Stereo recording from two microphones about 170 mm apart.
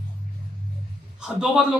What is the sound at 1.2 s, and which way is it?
Speech, 5° right (ahead or behind).